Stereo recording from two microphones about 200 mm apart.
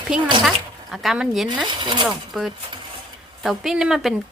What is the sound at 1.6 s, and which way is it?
Speech, 25° right (ahead or behind).